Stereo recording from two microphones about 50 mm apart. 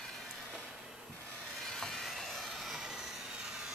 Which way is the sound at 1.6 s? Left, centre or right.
Centre.